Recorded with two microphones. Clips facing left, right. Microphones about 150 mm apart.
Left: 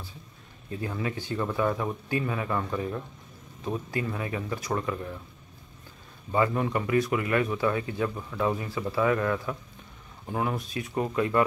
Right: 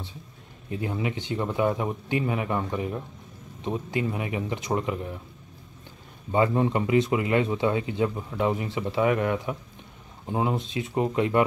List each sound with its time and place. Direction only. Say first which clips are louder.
0.7 s speech: right 3 dB; 20° right (ahead or behind)
6.3 s speech: right 3 dB; 25° right (ahead or behind)